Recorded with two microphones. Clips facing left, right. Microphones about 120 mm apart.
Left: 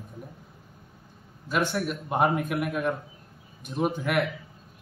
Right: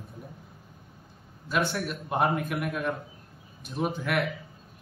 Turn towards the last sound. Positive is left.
turn(degrees=5)  # may be behind; listen again after turning